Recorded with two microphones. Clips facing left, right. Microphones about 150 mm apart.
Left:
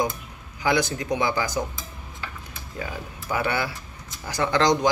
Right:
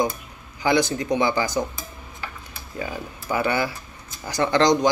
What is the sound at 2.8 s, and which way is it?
Speech, centre (ahead or behind).